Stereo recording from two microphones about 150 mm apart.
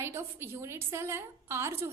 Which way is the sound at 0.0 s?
15° right (ahead or behind).